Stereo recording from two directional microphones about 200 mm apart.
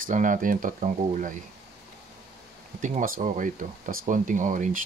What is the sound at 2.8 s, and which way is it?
Speech, 40° right (ahead or behind).